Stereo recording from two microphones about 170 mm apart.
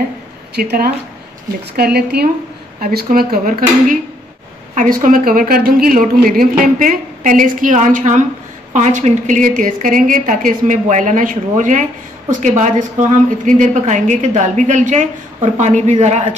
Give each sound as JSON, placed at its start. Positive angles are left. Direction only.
{"t": 0.6, "sound": "a woman's voice", "side_deg": -65}
{"t": 4.7, "sound": "speech", "side_deg": -50}